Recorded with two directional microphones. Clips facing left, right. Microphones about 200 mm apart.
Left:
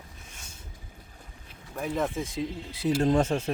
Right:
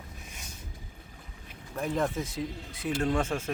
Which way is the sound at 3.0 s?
40° left (ahead or behind).